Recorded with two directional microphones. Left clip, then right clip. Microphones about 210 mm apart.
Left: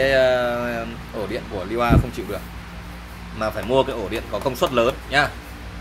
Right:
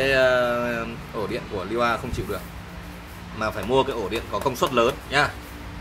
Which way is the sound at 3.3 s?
15° left (ahead or behind).